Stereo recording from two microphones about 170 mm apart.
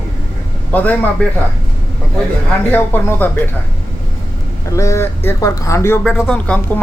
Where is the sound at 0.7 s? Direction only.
10° left (ahead or behind).